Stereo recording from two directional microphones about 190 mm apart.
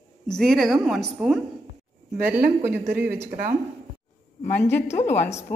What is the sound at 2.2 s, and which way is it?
Speech, 55° right (ahead or behind).